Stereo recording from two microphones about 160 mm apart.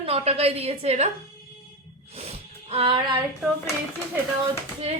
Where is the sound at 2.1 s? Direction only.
40° right (ahead or behind).